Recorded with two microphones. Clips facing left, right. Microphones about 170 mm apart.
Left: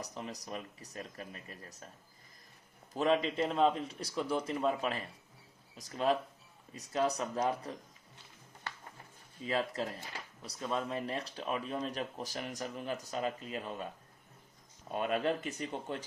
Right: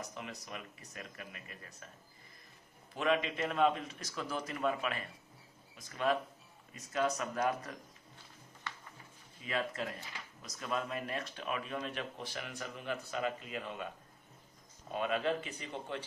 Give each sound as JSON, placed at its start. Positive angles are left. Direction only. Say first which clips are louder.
{"t": 0.0, "sound": "speech", "louder": "left 2 dB", "side_deg": 35}
{"t": 2.9, "sound": "a man's voice", "louder": "left 3 dB", "side_deg": 35}
{"t": 9.5, "sound": "speech", "louder": "left 3 dB", "side_deg": 35}
{"t": 14.9, "sound": "speech", "louder": "left 1 dB", "side_deg": 45}